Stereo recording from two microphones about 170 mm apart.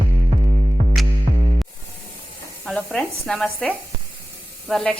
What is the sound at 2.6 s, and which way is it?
Speech, 5° left (ahead or behind).